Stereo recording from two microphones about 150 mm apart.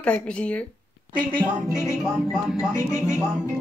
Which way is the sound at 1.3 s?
30° right (ahead or behind).